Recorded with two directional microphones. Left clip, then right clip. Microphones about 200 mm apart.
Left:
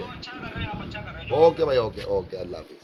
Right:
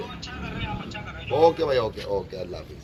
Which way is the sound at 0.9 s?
40° left (ahead or behind).